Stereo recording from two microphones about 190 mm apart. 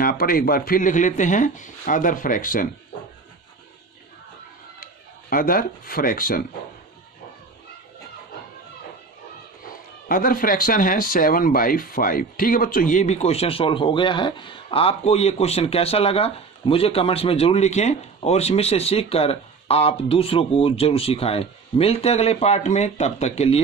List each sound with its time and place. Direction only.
0.0 s speech: 50° left (ahead or behind)
5.3 s speech: 50° left (ahead or behind)
10.0 s speech: 50° left (ahead or behind)